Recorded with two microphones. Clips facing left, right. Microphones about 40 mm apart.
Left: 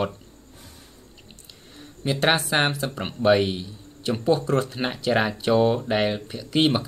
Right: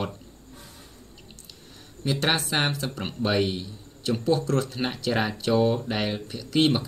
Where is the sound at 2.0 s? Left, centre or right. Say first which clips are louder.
Left 3 dB; centre.